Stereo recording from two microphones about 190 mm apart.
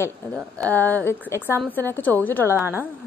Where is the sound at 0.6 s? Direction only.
10° left (ahead or behind).